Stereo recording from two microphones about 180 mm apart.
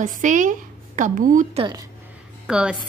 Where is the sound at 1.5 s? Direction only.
25° right (ahead or behind).